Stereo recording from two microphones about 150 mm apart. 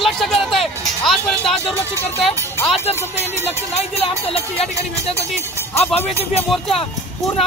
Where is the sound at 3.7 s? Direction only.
40° left (ahead or behind).